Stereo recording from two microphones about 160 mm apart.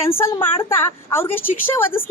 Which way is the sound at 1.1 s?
15° left (ahead or behind).